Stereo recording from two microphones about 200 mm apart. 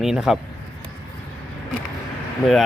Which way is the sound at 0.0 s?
Centre (ahead or behind).